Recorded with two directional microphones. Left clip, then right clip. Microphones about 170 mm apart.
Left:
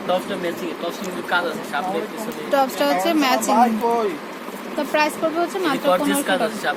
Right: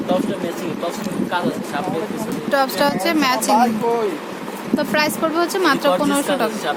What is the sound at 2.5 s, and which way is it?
Speech, 10° left (ahead or behind).